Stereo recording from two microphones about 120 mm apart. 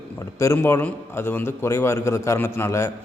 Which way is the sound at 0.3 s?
20° left (ahead or behind).